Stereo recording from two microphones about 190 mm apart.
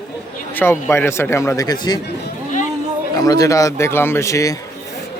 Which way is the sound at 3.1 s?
20° left (ahead or behind).